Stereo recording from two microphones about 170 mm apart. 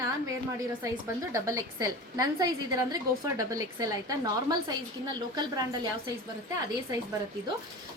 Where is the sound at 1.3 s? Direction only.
20° right (ahead or behind).